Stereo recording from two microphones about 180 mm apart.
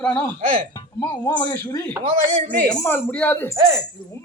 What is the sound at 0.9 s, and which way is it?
Speech, 20° left (ahead or behind).